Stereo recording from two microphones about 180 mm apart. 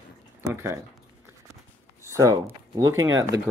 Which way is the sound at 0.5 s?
15° right (ahead or behind).